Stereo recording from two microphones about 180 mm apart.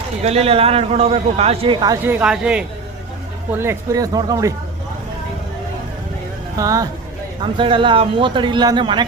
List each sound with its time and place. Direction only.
0.2 s a man's voice: 35° right (ahead or behind)
2.0 s a man's voice: 5° right (ahead or behind)
3.6 s speech: 15° right (ahead or behind)
6.6 s speech: 20° right (ahead or behind)